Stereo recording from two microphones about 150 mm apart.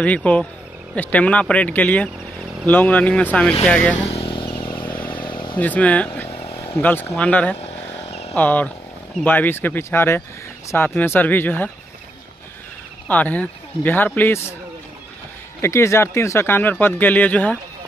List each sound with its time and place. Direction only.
0.0 s speech: 10° left (ahead or behind)
4.0 s motorcycle: 40° left (ahead or behind)
4.9 s a sound: 10° left (ahead or behind)
5.2 s vehicle: 30° left (ahead or behind)
5.6 s speech: 10° left (ahead or behind)
6.2 s vehicle: 40° left (ahead or behind)
6.6 s speech: 15° left (ahead or behind)
7.5 s vehicle: 45° left (ahead or behind)
8.4 s speech: 10° left (ahead or behind)
13.1 s speech: 10° left (ahead or behind)
15.6 s speech: 20° left (ahead or behind)